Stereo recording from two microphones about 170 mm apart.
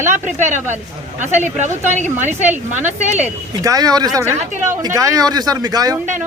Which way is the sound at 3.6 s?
20° right (ahead or behind).